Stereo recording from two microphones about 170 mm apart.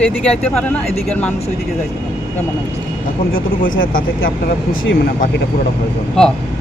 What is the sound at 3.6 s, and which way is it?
Speech, 55° left (ahead or behind).